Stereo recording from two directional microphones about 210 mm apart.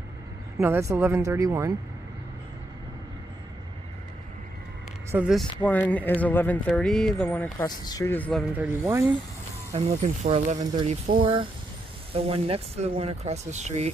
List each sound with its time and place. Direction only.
0.6 s speech: 15° right (ahead or behind)
5.1 s speech: 5° right (ahead or behind)
8.5 s speech: 10° right (ahead or behind)
10.0 s speech: 35° right (ahead or behind)
10.6 s speech: 20° right (ahead or behind)
10.9 s speech: 40° right (ahead or behind)
12.1 s speech: 25° right (ahead or behind)